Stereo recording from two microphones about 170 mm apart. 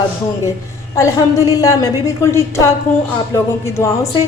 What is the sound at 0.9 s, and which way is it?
A man's voice, 20° left (ahead or behind).